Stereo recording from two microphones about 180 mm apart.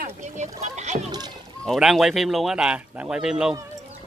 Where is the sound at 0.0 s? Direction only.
40° right (ahead or behind).